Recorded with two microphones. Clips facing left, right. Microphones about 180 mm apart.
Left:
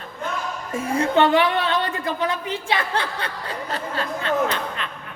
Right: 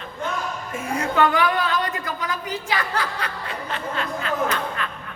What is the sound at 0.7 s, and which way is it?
A woman's voice, 30° left (ahead or behind).